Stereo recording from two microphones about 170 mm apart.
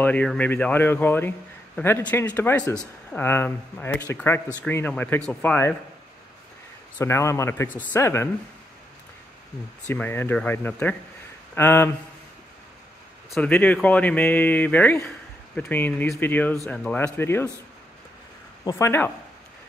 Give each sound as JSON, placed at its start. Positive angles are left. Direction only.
{"t": 0.0, "sound": "speech", "side_deg": 5}
{"t": 7.0, "sound": "speech", "side_deg": 15}
{"t": 9.8, "sound": "speech", "side_deg": 10}
{"t": 13.3, "sound": "speech", "side_deg": 10}
{"t": 18.6, "sound": "speech", "side_deg": 20}